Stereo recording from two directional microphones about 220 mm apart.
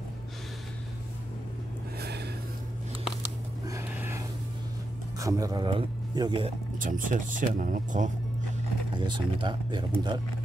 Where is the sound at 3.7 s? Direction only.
10° right (ahead or behind).